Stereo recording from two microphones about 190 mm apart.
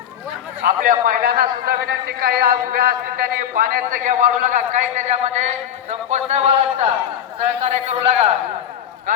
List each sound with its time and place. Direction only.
0.6 s a man's voice: 45° right (ahead or behind)